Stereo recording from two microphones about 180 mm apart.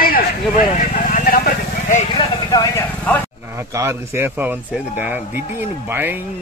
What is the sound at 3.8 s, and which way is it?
Speech, 15° right (ahead or behind).